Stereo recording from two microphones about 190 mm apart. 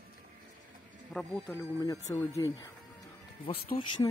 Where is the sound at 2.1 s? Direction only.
15° left (ahead or behind).